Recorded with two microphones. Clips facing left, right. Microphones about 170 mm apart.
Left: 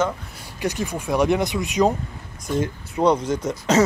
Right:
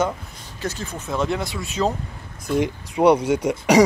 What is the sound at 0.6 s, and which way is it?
Speech, 15° left (ahead or behind).